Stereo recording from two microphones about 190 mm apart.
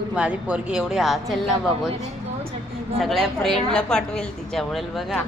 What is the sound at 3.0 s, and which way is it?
A woman's voice, centre (ahead or behind).